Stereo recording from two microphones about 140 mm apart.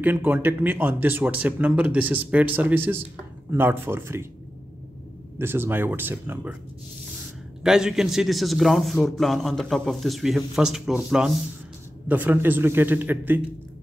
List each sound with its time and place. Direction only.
0.0 s speech: 15° right (ahead or behind)
5.4 s speech: 15° right (ahead or behind)
7.6 s a man's voice: 5° right (ahead or behind)